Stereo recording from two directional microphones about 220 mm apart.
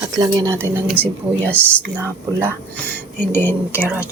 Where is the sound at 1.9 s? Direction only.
10° right (ahead or behind).